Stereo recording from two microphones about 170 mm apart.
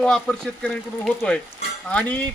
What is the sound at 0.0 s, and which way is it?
Speech, 5° left (ahead or behind).